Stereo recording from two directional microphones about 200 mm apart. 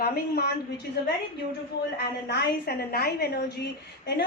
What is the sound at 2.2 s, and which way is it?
A woman's voice, 50° left (ahead or behind).